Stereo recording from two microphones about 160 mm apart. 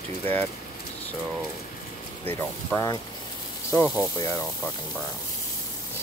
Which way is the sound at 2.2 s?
10° left (ahead or behind).